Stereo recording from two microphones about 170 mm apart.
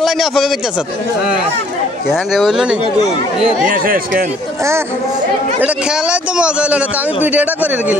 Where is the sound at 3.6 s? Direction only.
55° right (ahead or behind).